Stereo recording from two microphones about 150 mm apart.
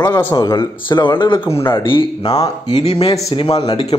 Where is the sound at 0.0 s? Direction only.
20° left (ahead or behind).